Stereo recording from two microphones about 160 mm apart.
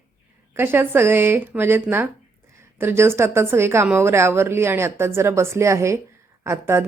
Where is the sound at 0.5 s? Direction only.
15° right (ahead or behind).